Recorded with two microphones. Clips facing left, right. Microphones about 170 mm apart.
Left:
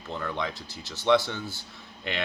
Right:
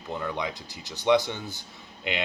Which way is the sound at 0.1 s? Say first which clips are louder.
Right 1 dB; 15° right (ahead or behind).